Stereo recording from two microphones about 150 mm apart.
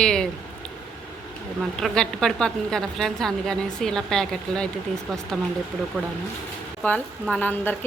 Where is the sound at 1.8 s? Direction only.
5° left (ahead or behind).